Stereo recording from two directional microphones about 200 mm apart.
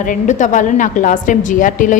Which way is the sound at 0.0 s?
40° left (ahead or behind).